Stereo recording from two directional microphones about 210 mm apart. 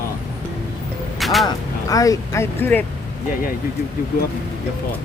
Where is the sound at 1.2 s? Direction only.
Centre (ahead or behind).